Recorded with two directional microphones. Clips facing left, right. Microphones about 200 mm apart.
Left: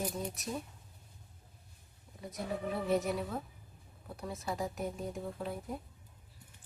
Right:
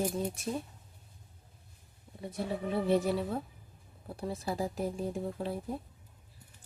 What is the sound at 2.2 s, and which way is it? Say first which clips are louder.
Speech: right 3 dB; 30° right (ahead or behind).